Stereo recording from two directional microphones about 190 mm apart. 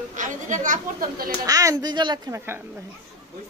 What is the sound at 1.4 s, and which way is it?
A woman's voice, 20° right (ahead or behind).